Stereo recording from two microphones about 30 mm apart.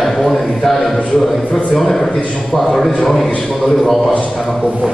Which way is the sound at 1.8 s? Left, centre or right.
Centre.